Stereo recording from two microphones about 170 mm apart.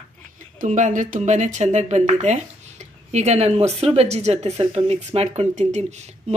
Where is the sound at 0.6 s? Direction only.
45° right (ahead or behind).